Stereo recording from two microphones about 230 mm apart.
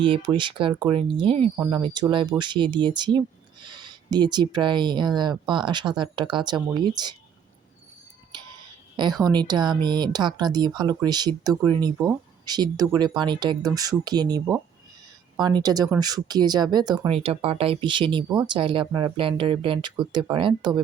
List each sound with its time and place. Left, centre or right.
0.0 s speech: right
1.5 s speech: centre
9.2 s speech: centre